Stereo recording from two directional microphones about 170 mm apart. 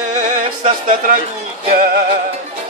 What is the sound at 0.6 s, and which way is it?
Speech, 50° right (ahead or behind).